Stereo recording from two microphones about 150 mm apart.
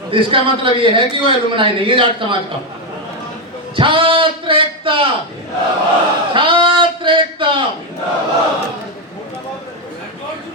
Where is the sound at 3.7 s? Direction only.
35° right (ahead or behind).